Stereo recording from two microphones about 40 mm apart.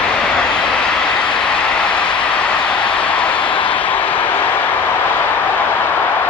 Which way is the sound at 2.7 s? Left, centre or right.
Left.